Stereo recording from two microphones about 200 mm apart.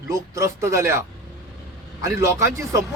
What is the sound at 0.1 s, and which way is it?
Speech, 15° right (ahead or behind).